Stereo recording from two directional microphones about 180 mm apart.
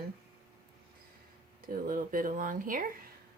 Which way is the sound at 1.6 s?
50° right (ahead or behind).